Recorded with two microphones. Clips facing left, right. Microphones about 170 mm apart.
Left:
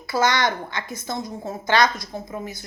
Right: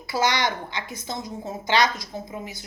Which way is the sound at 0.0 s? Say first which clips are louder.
Left 3 dB; 15° right (ahead or behind).